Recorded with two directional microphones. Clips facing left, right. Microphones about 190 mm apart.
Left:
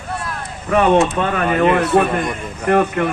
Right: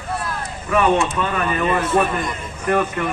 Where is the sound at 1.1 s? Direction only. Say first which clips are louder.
Left 4 dB; 55° left (ahead or behind).